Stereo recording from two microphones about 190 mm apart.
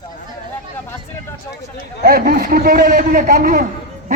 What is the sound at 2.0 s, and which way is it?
A man's voice, 50° right (ahead or behind).